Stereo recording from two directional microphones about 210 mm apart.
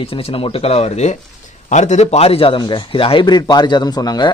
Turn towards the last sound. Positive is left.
turn(degrees=20)  # may be behind; listen again after turning